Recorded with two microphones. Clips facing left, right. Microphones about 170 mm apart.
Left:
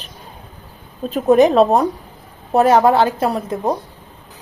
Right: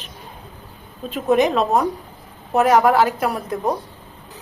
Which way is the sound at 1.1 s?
35° left (ahead or behind).